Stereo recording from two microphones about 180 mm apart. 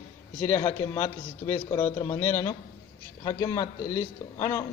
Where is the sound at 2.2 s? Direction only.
10° left (ahead or behind).